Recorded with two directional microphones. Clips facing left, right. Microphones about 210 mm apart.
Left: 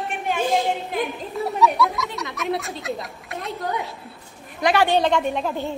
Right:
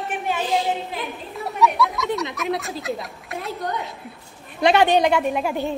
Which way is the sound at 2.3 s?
Centre (ahead or behind).